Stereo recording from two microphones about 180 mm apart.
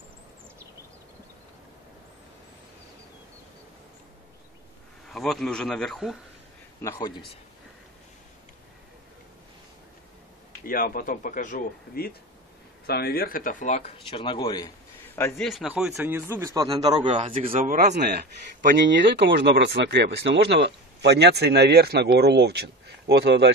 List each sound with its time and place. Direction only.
5.0 s speech: centre (ahead or behind)
6.8 s speech: 20° left (ahead or behind)
10.6 s speech: 50° left (ahead or behind); by 14.7 s 25° left (ahead or behind)
15.1 s a man's voice: 15° left (ahead or behind)
15.4 s a man's voice: centre (ahead or behind); by 17.3 s 30° right (ahead or behind)
17.3 s speech: 45° right (ahead or behind)
17.9 s speech: 60° right (ahead or behind)
19.1 s speech: 75° right (ahead or behind)